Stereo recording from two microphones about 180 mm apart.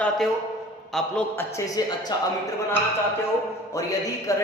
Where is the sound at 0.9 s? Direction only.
5° left (ahead or behind).